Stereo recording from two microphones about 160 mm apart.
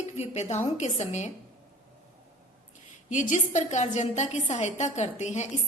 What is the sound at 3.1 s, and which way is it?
A woman's voice, 50° left (ahead or behind).